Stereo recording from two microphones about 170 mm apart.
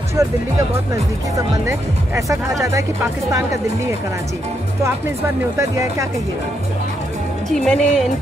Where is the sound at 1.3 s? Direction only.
20° right (ahead or behind).